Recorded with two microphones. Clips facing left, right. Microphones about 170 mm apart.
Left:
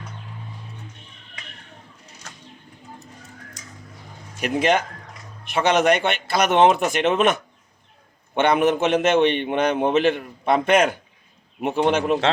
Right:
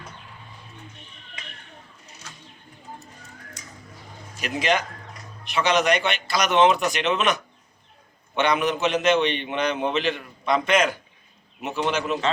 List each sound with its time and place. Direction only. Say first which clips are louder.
4.4 s a man's voice: left 4 dB; 55° left (ahead or behind)